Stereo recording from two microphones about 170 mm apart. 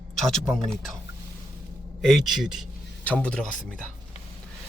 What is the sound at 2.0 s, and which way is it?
A man's voice, centre (ahead or behind).